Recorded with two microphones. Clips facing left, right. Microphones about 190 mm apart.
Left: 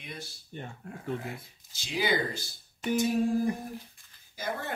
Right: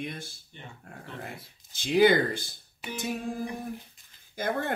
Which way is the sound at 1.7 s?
55° right (ahead or behind).